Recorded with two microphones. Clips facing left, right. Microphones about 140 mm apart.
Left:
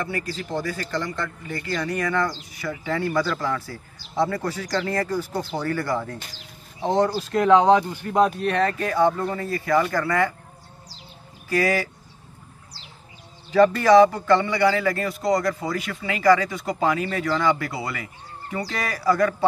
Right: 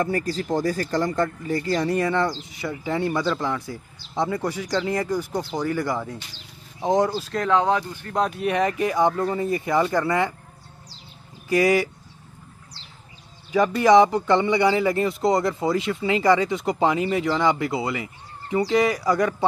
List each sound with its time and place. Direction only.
0.0 s speech: 40° right (ahead or behind); by 7.1 s 15° right (ahead or behind)
7.1 s speech: 5° left (ahead or behind)
7.4 s speech: 20° left (ahead or behind)
8.4 s speech: 10° right (ahead or behind)
11.4 s speech: 20° right (ahead or behind)
13.5 s speech: 15° right (ahead or behind)